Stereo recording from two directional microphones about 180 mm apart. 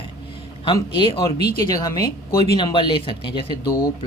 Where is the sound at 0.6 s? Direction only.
30° left (ahead or behind).